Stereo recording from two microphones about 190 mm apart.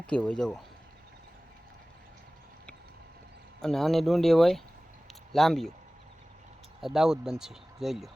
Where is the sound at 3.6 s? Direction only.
Centre (ahead or behind).